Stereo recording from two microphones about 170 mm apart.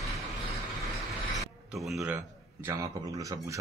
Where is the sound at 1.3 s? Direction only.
Centre (ahead or behind).